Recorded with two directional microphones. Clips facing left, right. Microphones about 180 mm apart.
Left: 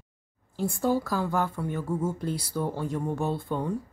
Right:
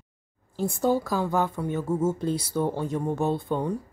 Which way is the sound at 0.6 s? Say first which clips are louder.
Right 2 dB; 20° right (ahead or behind).